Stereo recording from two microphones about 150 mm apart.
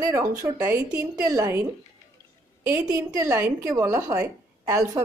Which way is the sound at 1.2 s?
20° right (ahead or behind).